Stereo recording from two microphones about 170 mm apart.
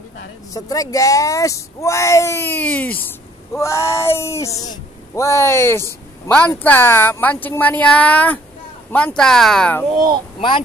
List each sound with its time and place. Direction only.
0.5 s speech: 20° left (ahead or behind)
3.1 s a sound: 15° left (ahead or behind)
4.6 s speech: 20° left (ahead or behind)